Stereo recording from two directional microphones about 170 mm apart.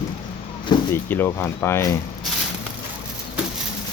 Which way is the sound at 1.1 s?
10° left (ahead or behind).